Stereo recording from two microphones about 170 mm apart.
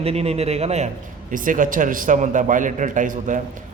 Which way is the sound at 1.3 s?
50° right (ahead or behind).